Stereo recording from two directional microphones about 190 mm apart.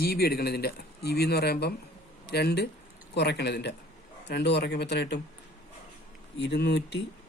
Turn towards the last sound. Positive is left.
turn(degrees=65)  # may be behind; listen again after turning